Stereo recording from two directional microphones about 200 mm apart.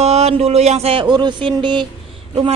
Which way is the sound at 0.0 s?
30° right (ahead or behind).